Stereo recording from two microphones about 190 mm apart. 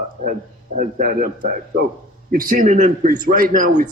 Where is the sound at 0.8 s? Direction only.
45° right (ahead or behind).